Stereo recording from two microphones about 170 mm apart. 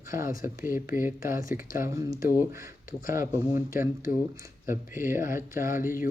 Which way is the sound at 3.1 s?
15° right (ahead or behind).